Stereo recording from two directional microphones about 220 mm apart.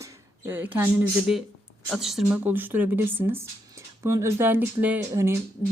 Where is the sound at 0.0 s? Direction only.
10° right (ahead or behind).